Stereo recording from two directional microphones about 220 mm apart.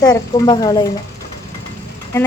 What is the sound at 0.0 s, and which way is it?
Speech, 20° left (ahead or behind).